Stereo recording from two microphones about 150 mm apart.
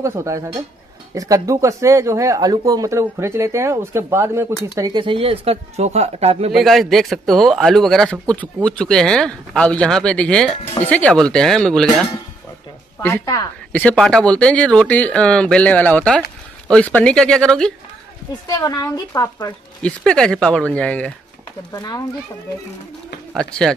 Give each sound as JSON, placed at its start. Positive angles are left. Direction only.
{"t": 0.0, "sound": "speech", "side_deg": -20}
{"t": 6.5, "sound": "a man's voice", "side_deg": 0}
{"t": 13.0, "sound": "a woman's voice", "side_deg": 20}
{"t": 13.7, "sound": "a man's voice", "side_deg": 10}
{"t": 18.5, "sound": "a woman's voice", "side_deg": 25}
{"t": 20.1, "sound": "speech", "side_deg": 5}
{"t": 21.7, "sound": "a woman's voice", "side_deg": 25}